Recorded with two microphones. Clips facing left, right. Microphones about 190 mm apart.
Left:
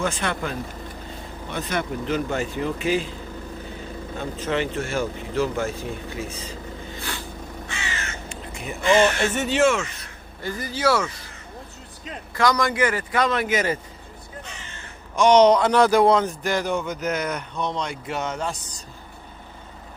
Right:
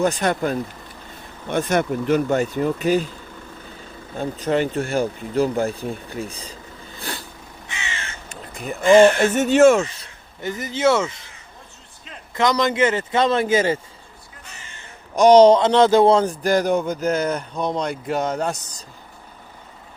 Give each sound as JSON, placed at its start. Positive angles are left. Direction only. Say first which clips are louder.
{"t": 0.0, "sound": "speech", "louder": "right 6 dB", "side_deg": -40}
{"t": 4.2, "sound": "speech", "louder": "right 5 dB", "side_deg": -40}
{"t": 7.0, "sound": "a sound", "louder": "right 3 dB", "side_deg": -40}
{"t": 7.7, "sound": "crow", "louder": "right 1 dB", "side_deg": -20}
{"t": 8.7, "sound": "speech", "louder": "right 7 dB", "side_deg": -50}
{"t": 10.4, "sound": "a man's voice", "louder": "right 4 dB", "side_deg": -20}
{"t": 12.4, "sound": "a man's voice", "louder": "right 3 dB", "side_deg": -20}
{"t": 15.1, "sound": "speech", "louder": "right 4 dB", "side_deg": -35}